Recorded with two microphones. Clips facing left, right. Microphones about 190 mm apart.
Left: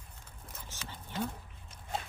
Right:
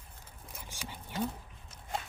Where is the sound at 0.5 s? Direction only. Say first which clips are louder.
Right 2 dB; 10° right (ahead or behind).